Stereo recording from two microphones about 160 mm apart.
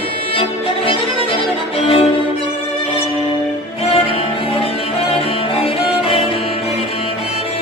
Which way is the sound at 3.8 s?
40° left (ahead or behind).